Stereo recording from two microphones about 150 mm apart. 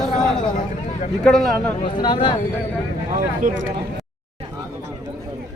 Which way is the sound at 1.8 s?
30° left (ahead or behind).